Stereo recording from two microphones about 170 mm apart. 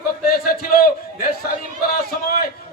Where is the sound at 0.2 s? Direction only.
60° left (ahead or behind).